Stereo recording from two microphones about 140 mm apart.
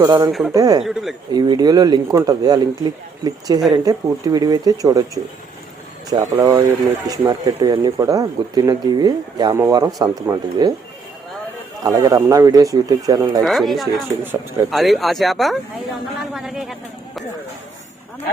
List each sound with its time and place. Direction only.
0.0 s speech: 25° right (ahead or behind)
0.3 s speech: centre (ahead or behind)
0.5 s speech: 25° right (ahead or behind)
0.8 s speech: centre (ahead or behind)
1.3 s speech: 30° right (ahead or behind)
11.8 s speech: 25° right (ahead or behind)
13.4 s speech: centre (ahead or behind)